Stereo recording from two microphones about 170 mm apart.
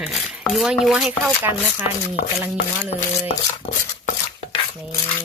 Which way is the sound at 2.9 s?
40° left (ahead or behind).